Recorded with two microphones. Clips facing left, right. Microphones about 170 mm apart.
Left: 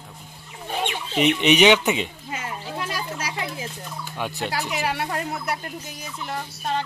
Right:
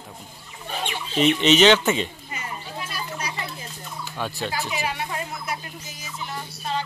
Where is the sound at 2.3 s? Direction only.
90° left.